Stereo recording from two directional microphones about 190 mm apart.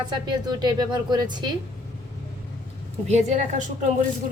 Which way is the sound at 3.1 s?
35° right (ahead or behind).